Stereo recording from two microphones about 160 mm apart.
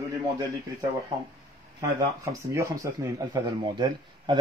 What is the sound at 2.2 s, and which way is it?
Speech, 20° right (ahead or behind).